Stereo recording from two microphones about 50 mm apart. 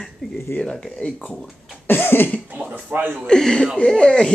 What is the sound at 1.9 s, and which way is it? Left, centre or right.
Cough, left.